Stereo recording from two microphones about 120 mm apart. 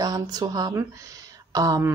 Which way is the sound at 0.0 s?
30° right (ahead or behind).